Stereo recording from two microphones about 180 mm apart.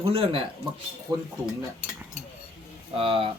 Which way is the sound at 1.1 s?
20° right (ahead or behind).